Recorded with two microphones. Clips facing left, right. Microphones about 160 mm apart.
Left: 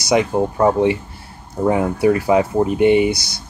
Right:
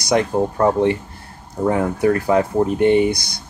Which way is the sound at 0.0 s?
5° left (ahead or behind).